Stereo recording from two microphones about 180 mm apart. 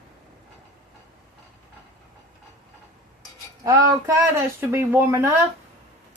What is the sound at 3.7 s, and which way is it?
Speech, 15° right (ahead or behind).